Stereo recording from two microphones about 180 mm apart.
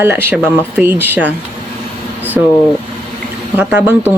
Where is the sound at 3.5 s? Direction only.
10° right (ahead or behind).